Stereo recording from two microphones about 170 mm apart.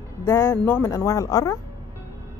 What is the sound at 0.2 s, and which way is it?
Speech, 15° left (ahead or behind).